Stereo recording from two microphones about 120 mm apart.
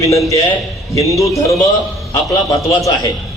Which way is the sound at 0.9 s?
25° left (ahead or behind).